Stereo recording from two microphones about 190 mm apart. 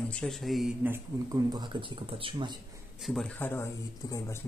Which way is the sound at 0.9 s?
20° right (ahead or behind).